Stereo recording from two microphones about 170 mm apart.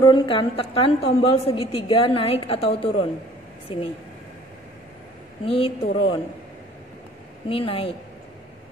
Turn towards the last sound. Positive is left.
turn(degrees=35)  # may be behind; listen again after turning